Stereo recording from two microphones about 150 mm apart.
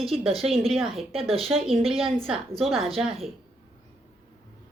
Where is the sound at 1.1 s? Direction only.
40° right (ahead or behind).